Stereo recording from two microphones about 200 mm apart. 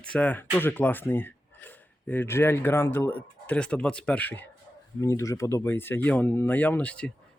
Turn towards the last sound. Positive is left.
turn(degrees=5)  # may be behind; listen again after turning